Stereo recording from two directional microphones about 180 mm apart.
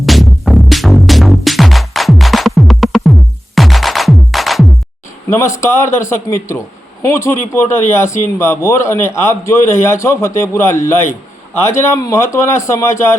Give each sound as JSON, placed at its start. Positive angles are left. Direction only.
{"t": 0.0, "sound": "music", "side_deg": 0}
{"t": 5.5, "sound": "speech", "side_deg": 15}